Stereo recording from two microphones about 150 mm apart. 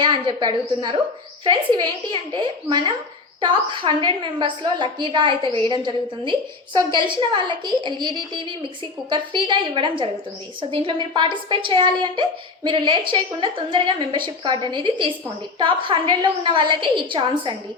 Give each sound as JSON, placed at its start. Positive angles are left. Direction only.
{"t": 0.0, "sound": "a woman's voice", "side_deg": -30}
{"t": 6.7, "sound": "a woman's voice", "side_deg": -30}